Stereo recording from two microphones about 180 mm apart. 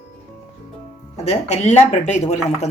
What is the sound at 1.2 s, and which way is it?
Speech, 40° left (ahead or behind).